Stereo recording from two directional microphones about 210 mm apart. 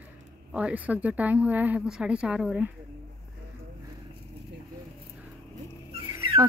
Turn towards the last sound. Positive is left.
turn(degrees=-15)  # may be behind; listen again after turning